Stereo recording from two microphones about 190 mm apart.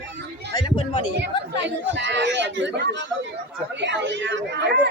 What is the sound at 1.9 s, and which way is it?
Speech, 70° right (ahead or behind).